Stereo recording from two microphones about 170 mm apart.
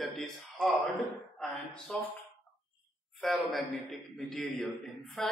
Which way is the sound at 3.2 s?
Centre (ahead or behind).